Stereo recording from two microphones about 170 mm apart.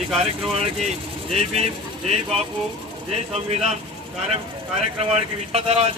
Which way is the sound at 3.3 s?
40° right (ahead or behind).